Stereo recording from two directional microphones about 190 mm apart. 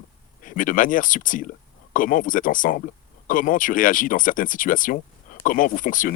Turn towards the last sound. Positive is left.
turn(degrees=45)  # may be behind; listen again after turning